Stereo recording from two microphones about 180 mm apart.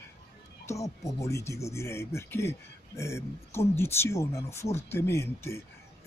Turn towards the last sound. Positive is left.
turn(degrees=15)  # may be behind; listen again after turning